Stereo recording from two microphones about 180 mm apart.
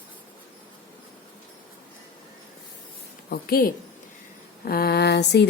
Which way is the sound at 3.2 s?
60° left (ahead or behind).